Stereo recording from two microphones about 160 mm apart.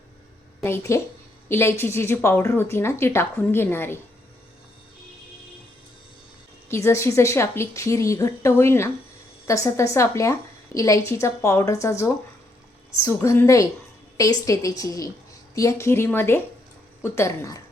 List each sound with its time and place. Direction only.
0.6 s a woman's voice: 15° left (ahead or behind)
6.7 s a woman's voice: 15° left (ahead or behind)